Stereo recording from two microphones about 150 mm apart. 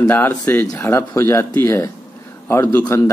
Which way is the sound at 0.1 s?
10° left (ahead or behind).